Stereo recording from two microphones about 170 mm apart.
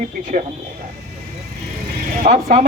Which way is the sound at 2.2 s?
40° right (ahead or behind).